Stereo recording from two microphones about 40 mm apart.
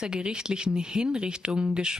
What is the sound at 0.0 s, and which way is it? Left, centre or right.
Speech, centre.